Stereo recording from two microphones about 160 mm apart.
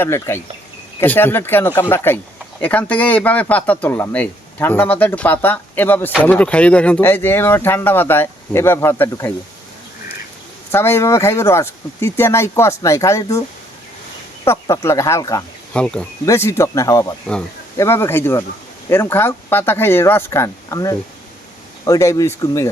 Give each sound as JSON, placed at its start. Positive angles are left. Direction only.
{"t": 0.0, "sound": "speech", "side_deg": 15}
{"t": 10.7, "sound": "speech", "side_deg": 15}
{"t": 14.4, "sound": "speech", "side_deg": 15}
{"t": 15.7, "sound": "speech", "side_deg": 5}
{"t": 16.2, "sound": "speech", "side_deg": 20}